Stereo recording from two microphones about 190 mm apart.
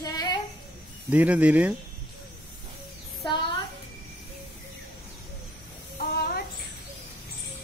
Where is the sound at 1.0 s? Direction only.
10° right (ahead or behind).